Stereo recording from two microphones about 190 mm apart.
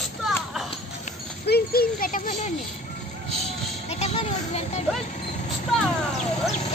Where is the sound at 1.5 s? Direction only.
50° left (ahead or behind).